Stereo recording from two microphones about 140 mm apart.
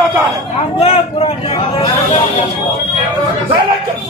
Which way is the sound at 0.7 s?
45° left (ahead or behind).